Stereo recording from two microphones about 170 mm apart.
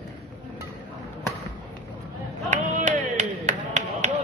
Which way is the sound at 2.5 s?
45° right (ahead or behind).